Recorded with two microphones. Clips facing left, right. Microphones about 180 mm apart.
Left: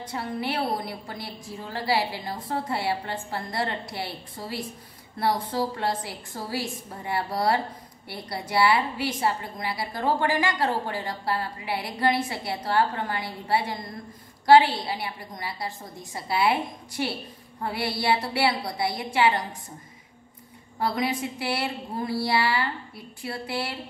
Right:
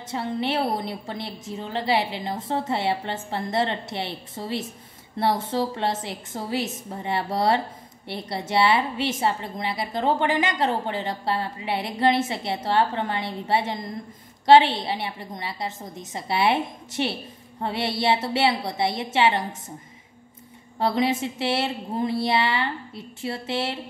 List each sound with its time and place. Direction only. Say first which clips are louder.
0.1 s a woman's voice: right 4 dB; 25° right (ahead or behind)
20.8 s a woman's voice: right 4 dB; 25° right (ahead or behind)